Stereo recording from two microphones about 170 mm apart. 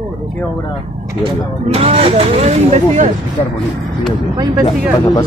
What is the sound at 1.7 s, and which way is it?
Speech, 35° right (ahead or behind).